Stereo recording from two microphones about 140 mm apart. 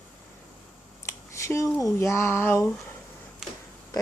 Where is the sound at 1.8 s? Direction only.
20° left (ahead or behind).